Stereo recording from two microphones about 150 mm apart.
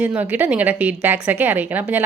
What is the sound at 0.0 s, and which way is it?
A woman's voice, 10° right (ahead or behind).